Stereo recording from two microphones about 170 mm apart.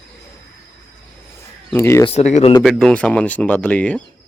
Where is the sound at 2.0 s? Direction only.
40° left (ahead or behind).